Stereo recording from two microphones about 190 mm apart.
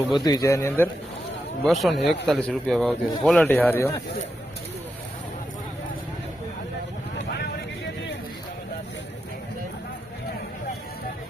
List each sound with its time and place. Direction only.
0.3 s a man's voice: 20° left (ahead or behind)
1.6 s speech: centre (ahead or behind)